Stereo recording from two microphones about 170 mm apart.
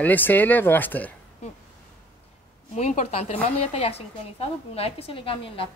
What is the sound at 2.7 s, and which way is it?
A woman's voice, 45° left (ahead or behind).